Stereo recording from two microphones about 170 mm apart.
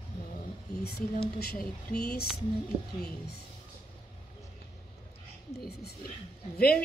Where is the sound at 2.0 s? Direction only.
65° left (ahead or behind).